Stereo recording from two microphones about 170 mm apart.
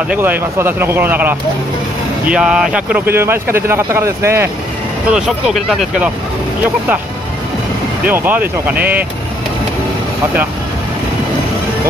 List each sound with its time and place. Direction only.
0.1 s speech: 10° right (ahead or behind)
5.1 s speech: 5° right (ahead or behind)
8.0 s speech: 10° right (ahead or behind)